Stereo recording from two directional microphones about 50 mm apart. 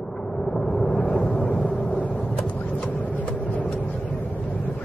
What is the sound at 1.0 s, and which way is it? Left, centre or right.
Vehicle, left.